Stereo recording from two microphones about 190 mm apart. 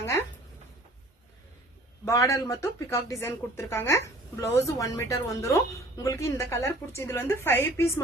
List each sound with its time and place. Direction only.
2.0 s speech: 15° left (ahead or behind)